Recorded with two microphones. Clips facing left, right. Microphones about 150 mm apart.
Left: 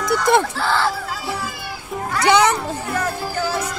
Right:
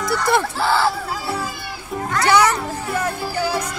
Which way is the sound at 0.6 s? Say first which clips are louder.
Right 2 dB; 10° right (ahead or behind).